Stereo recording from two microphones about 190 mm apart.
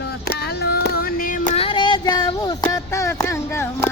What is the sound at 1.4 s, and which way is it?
Child singing, 30° left (ahead or behind).